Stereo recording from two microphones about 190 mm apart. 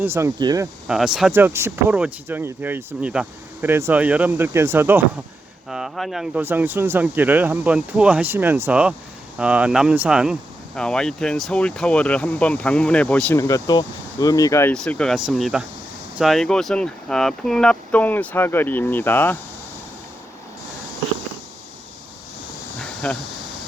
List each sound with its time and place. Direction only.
0.0 s speech: 15° right (ahead or behind)
0.9 s speech: 5° right (ahead or behind)
22.8 s a sound: 5° left (ahead or behind)